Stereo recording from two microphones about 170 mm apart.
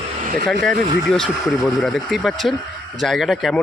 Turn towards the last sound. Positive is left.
turn(degrees=0)  # may be behind; listen again after turning